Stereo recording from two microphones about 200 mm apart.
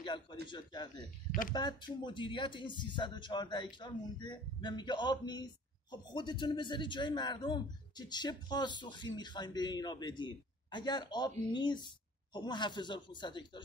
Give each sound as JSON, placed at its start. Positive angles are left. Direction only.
{"t": 0.0, "sound": "a man's voice", "side_deg": 20}